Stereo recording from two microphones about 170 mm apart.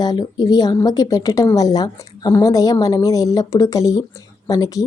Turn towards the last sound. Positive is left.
turn(degrees=20)  # may be behind; listen again after turning